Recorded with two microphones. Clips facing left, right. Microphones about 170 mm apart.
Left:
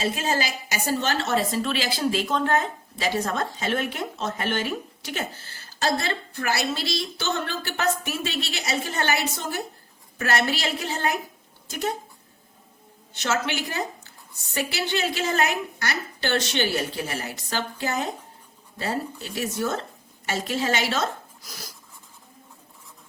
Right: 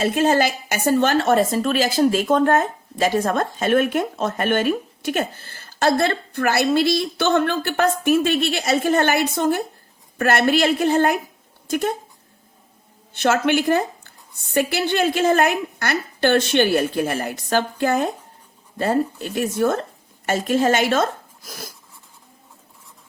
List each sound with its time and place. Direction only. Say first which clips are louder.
0.0 s a woman's voice: right 8 dB; 55° right (ahead or behind)
13.1 s a woman's voice: right 8 dB; 55° right (ahead or behind)